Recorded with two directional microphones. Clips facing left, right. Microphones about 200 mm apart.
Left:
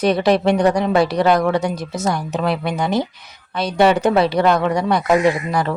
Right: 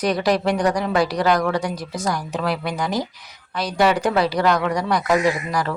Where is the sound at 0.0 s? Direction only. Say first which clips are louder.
Left 4 dB; 25° left (ahead or behind).